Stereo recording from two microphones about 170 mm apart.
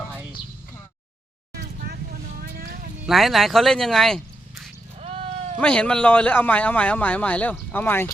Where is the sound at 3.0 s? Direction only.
Centre (ahead or behind).